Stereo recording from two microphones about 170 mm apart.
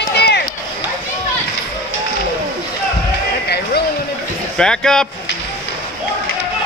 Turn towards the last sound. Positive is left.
turn(degrees=5)  # may be behind; listen again after turning